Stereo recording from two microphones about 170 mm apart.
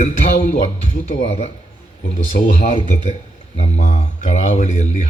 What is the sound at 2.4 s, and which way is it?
Speech, 65° left (ahead or behind).